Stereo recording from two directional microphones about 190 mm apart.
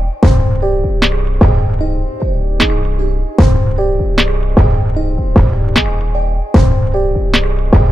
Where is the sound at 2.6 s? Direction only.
Centre (ahead or behind).